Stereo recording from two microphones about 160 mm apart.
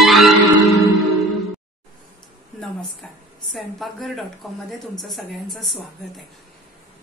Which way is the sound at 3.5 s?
Centre (ahead or behind).